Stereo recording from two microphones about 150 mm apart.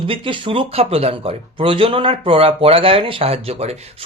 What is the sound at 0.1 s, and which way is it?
Speech, 35° right (ahead or behind).